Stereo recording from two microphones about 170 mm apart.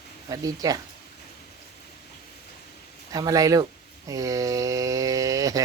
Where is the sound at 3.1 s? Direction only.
20° right (ahead or behind).